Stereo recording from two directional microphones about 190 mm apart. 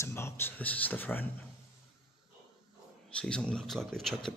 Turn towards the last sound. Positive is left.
turn(degrees=0)  # may be behind; listen again after turning